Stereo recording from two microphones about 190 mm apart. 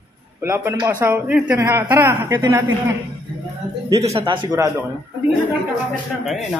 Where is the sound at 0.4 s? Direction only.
15° right (ahead or behind).